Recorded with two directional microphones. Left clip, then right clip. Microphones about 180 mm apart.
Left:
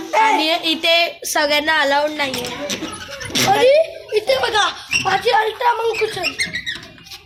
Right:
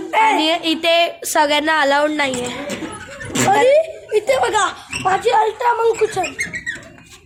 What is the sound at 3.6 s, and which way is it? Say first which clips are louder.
Speech: even; 65° right (ahead or behind).